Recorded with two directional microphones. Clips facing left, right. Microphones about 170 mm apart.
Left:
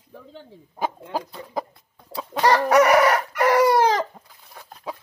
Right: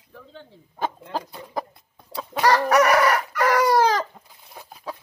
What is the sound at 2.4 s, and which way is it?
Chicken, 20° left (ahead or behind).